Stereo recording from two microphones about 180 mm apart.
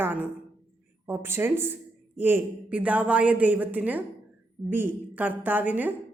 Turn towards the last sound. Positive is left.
turn(degrees=-10)  # may be behind; listen again after turning